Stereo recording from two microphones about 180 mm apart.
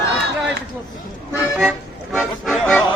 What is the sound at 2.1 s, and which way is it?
Speech, 5° left (ahead or behind).